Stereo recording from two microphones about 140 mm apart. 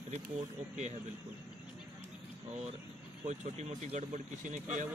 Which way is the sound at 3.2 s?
55° right (ahead or behind).